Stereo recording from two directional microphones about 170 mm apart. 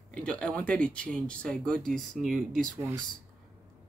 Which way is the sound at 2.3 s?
50° right (ahead or behind).